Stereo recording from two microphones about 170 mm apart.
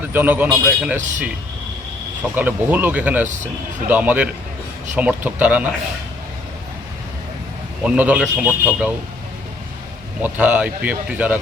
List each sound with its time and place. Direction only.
0.1 s a man's voice: 10° right (ahead or behind)
0.9 s speech: 45° right (ahead or behind)
2.3 s speech: 10° right (ahead or behind)
3.2 s speech: 45° right (ahead or behind)
3.8 s speech: 10° right (ahead or behind)
7.9 s speech: 5° right (ahead or behind)
10.2 s speech: 10° right (ahead or behind)